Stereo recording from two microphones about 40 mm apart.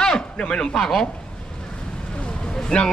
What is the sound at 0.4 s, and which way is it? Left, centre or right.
Speech, centre.